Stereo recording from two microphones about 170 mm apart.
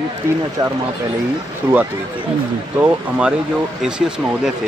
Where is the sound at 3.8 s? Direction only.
5° right (ahead or behind).